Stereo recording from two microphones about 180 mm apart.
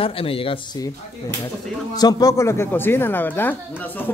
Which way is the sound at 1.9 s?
20° left (ahead or behind).